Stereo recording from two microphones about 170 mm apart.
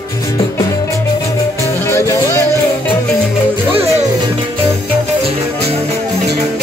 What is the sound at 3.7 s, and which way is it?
Music, 35° right (ahead or behind).